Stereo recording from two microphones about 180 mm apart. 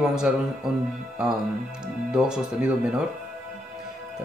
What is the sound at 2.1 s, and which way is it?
Speech, 5° right (ahead or behind).